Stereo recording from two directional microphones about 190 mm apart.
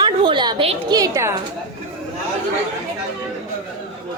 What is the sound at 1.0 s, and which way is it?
Speech, 15° right (ahead or behind).